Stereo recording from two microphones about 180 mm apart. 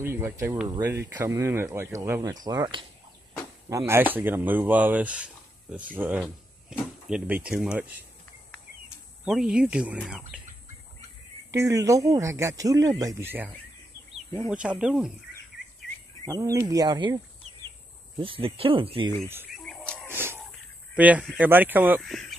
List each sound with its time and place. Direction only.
0.0 s speech: 15° right (ahead or behind)
9.2 s speech: 5° right (ahead or behind)
11.5 s speech: 15° right (ahead or behind)
14.5 s speech: 5° right (ahead or behind)
16.3 s speech: 20° right (ahead or behind)
18.2 s speech: 30° right (ahead or behind)
19.5 s a sound: 5° left (ahead or behind)
20.1 s wheeze: 15° right (ahead or behind)
20.9 s speech: 10° right (ahead or behind)